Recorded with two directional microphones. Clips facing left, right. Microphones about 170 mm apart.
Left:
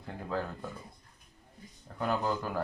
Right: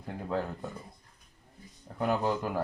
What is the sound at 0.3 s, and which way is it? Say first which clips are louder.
Speech: right 2 dB; 25° right (ahead or behind).